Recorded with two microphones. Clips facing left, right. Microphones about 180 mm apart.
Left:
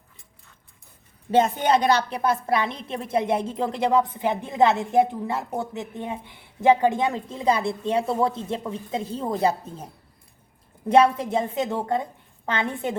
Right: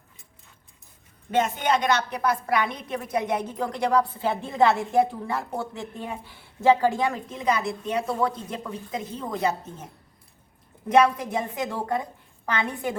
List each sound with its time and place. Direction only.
1.3 s speech: 35° left (ahead or behind)
10.8 s speech: 30° left (ahead or behind)